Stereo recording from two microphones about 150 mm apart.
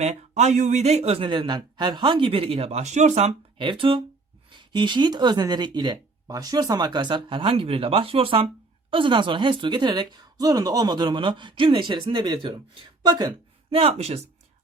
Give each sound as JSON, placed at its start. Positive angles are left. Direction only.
{"t": 0.0, "sound": "speech", "side_deg": -50}
{"t": 3.6, "sound": "speech", "side_deg": -35}
{"t": 13.7, "sound": "speech", "side_deg": -40}